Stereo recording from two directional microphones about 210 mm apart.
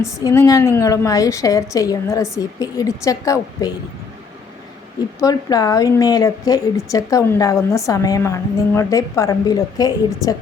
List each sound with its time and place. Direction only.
0.0 s a woman's voice: 15° left (ahead or behind)
5.2 s a woman's voice: 15° left (ahead or behind)